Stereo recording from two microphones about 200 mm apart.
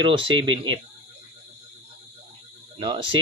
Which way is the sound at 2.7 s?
25° right (ahead or behind).